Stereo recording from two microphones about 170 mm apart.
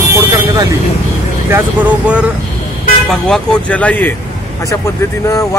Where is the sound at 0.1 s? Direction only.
20° right (ahead or behind).